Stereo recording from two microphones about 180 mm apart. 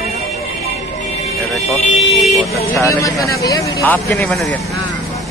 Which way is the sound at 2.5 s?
15° left (ahead or behind).